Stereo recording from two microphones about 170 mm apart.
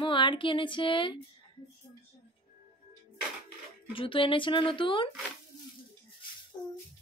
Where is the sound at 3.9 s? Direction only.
30° left (ahead or behind).